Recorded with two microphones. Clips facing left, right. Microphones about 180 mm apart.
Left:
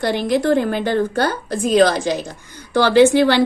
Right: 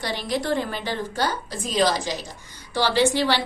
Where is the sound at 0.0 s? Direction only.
50° left (ahead or behind).